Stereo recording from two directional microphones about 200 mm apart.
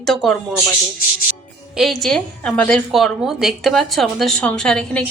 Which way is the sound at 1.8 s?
Centre (ahead or behind).